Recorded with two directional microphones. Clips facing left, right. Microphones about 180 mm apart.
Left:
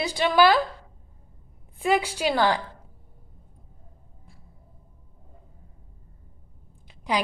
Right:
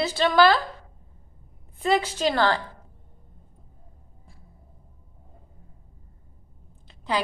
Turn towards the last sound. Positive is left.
turn(degrees=15)  # may be behind; listen again after turning